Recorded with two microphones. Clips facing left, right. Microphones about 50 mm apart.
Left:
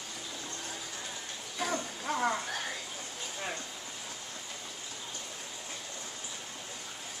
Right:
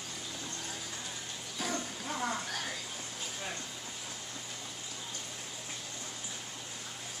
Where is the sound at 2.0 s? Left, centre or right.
Left.